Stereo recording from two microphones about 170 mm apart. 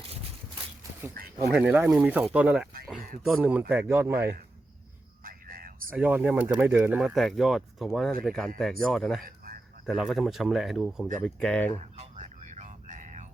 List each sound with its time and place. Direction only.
1.5 s speech: 10° right (ahead or behind)
5.2 s cricket: 55° right (ahead or behind)
5.9 s speech: 10° right (ahead or behind)
9.2 s a sound: 55° right (ahead or behind)
9.8 s speech: centre (ahead or behind)
11.8 s a sound: 40° right (ahead or behind)